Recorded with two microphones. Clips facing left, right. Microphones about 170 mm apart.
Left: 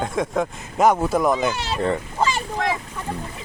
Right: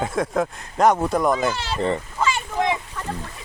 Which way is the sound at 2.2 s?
35° left (ahead or behind).